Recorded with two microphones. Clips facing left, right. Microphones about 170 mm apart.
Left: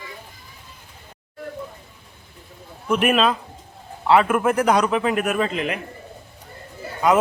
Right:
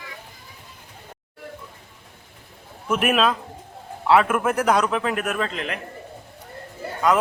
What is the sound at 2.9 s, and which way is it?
A man's voice, 5° right (ahead or behind).